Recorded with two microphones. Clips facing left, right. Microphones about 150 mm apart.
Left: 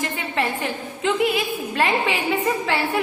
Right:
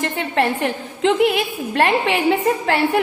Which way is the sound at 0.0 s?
70° right (ahead or behind).